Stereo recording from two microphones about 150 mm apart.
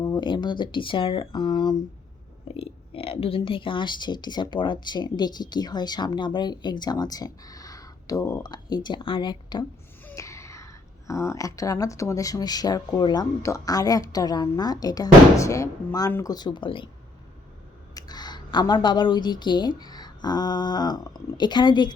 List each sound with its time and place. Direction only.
0.0 s speech: 30° left (ahead or behind)
10.1 s speech: 20° left (ahead or behind)
17.9 s speech: 30° left (ahead or behind)